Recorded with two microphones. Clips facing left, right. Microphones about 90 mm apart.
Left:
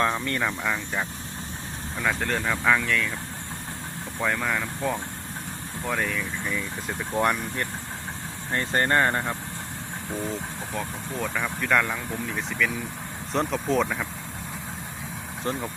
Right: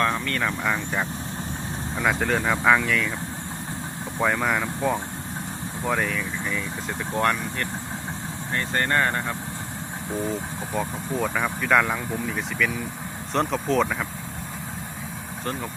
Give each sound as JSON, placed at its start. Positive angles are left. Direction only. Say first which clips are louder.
{"t": 0.0, "sound": "speech", "louder": "right 1 dB", "side_deg": 20}
{"t": 0.4, "sound": "speech", "louder": "right 2 dB", "side_deg": -5}
{"t": 4.2, "sound": "speech", "louder": "right 3 dB", "side_deg": -10}
{"t": 8.5, "sound": "speech", "louder": "left 1 dB", "side_deg": 25}
{"t": 10.8, "sound": "speech", "louder": "right 5 dB", "side_deg": -5}